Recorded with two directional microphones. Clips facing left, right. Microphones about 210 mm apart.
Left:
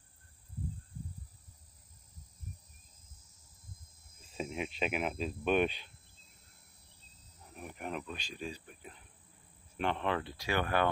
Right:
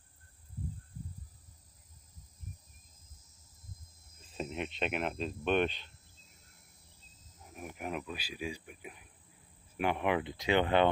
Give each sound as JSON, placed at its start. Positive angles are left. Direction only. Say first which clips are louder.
{"t": 4.3, "sound": "speech", "louder": "even", "side_deg": 5}
{"t": 7.4, "sound": "speech", "louder": "right 2 dB", "side_deg": -5}